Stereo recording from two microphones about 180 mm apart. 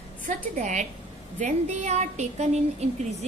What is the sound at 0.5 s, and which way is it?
A woman's voice, 45° right (ahead or behind).